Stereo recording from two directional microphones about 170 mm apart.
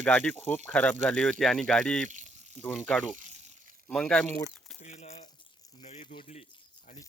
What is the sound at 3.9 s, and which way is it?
Speech, 5° left (ahead or behind).